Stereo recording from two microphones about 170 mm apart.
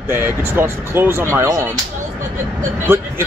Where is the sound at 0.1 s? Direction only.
15° right (ahead or behind).